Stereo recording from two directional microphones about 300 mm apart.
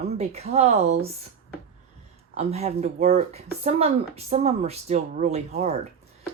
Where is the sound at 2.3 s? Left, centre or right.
Right.